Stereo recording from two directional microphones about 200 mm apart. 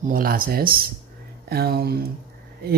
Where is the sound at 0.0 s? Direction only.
45° right (ahead or behind).